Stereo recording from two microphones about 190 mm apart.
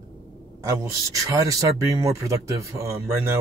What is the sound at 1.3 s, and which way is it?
Speech, 15° right (ahead or behind).